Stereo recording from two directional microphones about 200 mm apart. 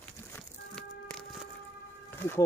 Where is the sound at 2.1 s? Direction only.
10° left (ahead or behind).